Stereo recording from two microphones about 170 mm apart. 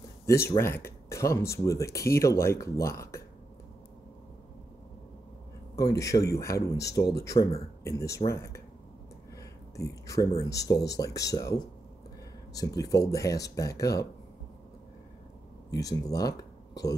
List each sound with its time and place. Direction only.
0.3 s speech: 15° left (ahead or behind)
5.8 s speech: 20° left (ahead or behind)
15.7 s speech: 20° left (ahead or behind)